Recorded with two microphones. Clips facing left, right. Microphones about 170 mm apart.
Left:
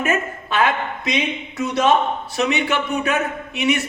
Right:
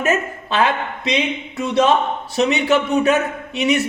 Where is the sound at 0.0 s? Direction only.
35° right (ahead or behind).